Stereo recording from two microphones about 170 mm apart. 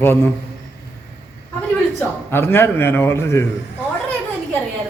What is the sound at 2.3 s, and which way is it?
A man's voice, 15° left (ahead or behind).